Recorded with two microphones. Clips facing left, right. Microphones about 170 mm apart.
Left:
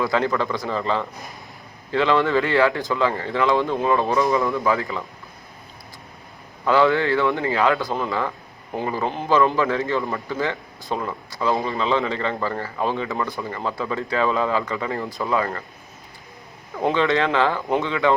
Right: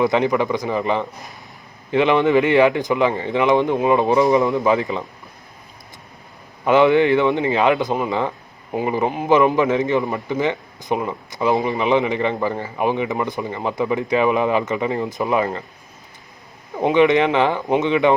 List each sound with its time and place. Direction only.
0.0 s speech: 20° right (ahead or behind)
6.7 s speech: 20° right (ahead or behind)
16.8 s speech: 15° right (ahead or behind)